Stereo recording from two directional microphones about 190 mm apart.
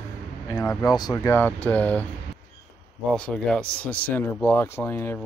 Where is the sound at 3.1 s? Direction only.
5° left (ahead or behind).